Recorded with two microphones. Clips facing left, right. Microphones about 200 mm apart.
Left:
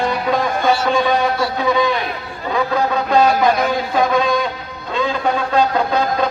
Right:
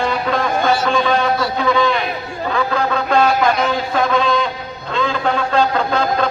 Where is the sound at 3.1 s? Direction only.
15° left (ahead or behind).